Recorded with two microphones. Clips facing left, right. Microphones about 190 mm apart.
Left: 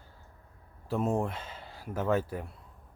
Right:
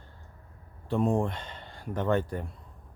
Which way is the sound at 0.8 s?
5° left (ahead or behind).